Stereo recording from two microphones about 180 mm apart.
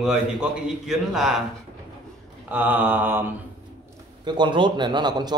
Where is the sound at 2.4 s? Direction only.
10° right (ahead or behind).